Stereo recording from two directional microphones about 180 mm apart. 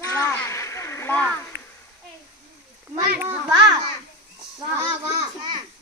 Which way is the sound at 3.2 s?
15° right (ahead or behind).